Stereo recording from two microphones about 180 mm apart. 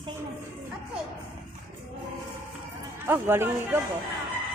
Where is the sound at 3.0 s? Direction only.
15° right (ahead or behind).